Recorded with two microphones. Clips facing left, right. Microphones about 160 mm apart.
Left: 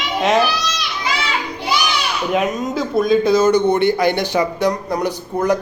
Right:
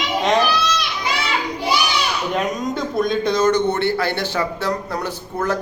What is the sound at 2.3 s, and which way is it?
A man's voice, 5° left (ahead or behind).